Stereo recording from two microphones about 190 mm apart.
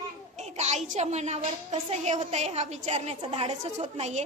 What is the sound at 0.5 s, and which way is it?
A woman's voice, 35° right (ahead or behind).